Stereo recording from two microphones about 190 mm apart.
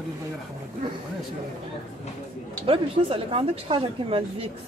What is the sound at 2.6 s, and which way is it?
A woman's voice, 30° right (ahead or behind).